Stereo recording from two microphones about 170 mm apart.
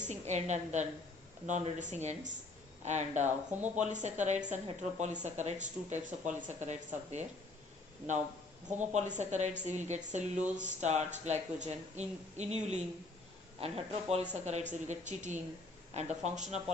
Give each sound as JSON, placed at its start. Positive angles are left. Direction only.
{"t": 0.0, "sound": "speech", "side_deg": -40}
{"t": 8.9, "sound": "speech", "side_deg": -45}